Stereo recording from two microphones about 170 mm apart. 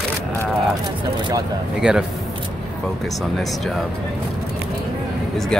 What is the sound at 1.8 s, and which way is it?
Speech, 5° right (ahead or behind).